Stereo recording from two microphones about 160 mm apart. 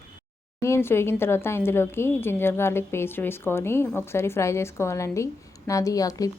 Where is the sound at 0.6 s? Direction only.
15° left (ahead or behind).